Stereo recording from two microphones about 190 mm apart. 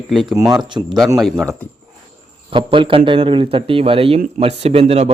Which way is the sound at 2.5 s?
25° right (ahead or behind).